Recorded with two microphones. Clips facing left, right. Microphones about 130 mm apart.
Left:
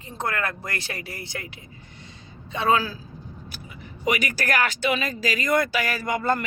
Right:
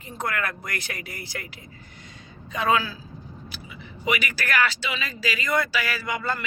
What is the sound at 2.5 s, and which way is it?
Speech, 35° left (ahead or behind).